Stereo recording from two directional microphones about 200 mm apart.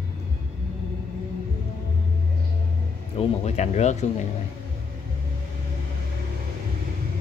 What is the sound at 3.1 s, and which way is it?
Speech, 35° left (ahead or behind).